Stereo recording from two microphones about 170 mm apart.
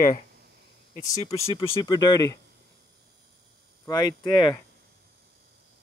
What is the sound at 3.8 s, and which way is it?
Speech, 25° left (ahead or behind).